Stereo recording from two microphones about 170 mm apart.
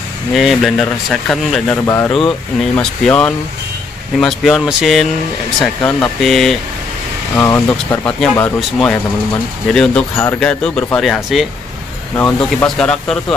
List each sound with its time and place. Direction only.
0.3 s speech: centre (ahead or behind)
1.9 s speech: 15° left (ahead or behind)
2.1 s speech: 5° left (ahead or behind)
7.3 s speech: 15° left (ahead or behind)
12.2 s speech: 15° left (ahead or behind)
12.6 s speech: 5° left (ahead or behind)